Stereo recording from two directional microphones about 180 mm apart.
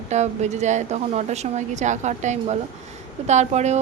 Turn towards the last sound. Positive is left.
turn(degrees=-40)  # may be behind; listen again after turning